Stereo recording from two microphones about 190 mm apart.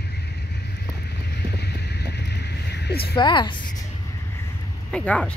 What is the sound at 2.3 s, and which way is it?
Vehicle, 60° left (ahead or behind).